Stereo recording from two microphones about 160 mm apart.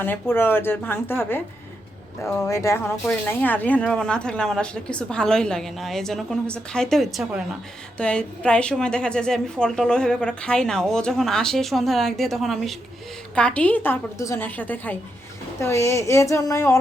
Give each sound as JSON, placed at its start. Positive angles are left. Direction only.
{"t": 0.0, "sound": "a woman's voice", "side_deg": 15}